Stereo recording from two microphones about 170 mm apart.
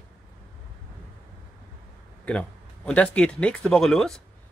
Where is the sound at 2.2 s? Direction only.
5° left (ahead or behind).